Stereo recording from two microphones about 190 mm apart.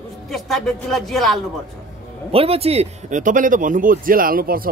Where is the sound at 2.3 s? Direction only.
30° right (ahead or behind).